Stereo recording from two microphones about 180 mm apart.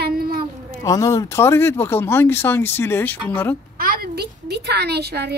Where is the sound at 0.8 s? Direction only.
20° left (ahead or behind).